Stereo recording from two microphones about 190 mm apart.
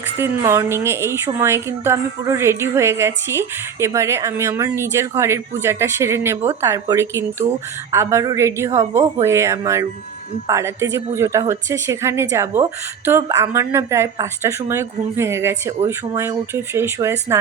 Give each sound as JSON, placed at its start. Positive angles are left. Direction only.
{"t": 0.2, "sound": "a woman's voice", "side_deg": -10}